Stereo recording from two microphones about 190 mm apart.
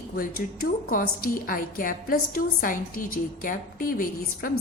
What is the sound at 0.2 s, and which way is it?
A woman's voice, 50° left (ahead or behind).